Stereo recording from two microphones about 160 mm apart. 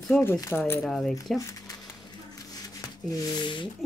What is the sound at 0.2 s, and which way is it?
Speech, 15° left (ahead or behind).